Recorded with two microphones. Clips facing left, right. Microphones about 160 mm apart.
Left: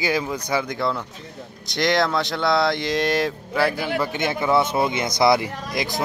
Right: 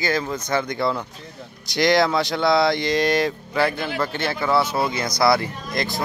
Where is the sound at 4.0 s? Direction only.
15° left (ahead or behind).